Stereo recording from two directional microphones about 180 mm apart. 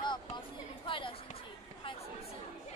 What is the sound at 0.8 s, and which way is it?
Speech, 30° left (ahead or behind).